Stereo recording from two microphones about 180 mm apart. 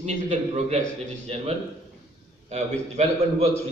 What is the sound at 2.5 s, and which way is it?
Speech, 35° right (ahead or behind).